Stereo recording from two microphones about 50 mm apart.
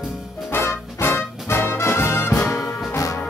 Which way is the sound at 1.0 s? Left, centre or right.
Left.